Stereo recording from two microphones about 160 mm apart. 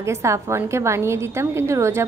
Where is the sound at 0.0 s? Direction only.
20° right (ahead or behind).